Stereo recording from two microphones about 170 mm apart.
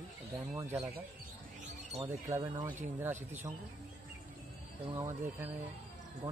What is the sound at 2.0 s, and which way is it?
Speech, 15° right (ahead or behind).